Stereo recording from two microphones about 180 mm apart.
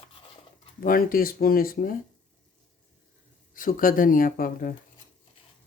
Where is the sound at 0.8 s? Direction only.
50° left (ahead or behind).